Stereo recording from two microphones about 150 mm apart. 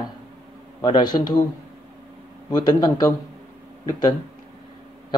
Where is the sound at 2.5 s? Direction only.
25° left (ahead or behind).